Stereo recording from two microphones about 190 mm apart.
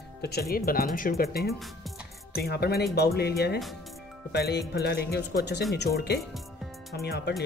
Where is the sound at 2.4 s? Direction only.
55° left (ahead or behind).